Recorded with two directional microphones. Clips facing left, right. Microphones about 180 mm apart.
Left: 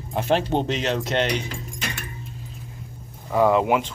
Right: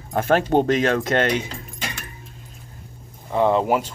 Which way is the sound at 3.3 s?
25° right (ahead or behind).